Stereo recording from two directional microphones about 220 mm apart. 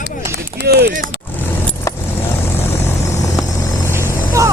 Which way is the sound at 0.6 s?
45° right (ahead or behind).